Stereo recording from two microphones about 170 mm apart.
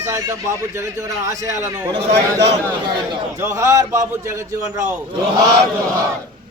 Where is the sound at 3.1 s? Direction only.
20° right (ahead or behind).